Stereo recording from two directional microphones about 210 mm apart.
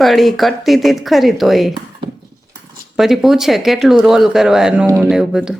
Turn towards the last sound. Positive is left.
turn(degrees=-5)  # may be behind; listen again after turning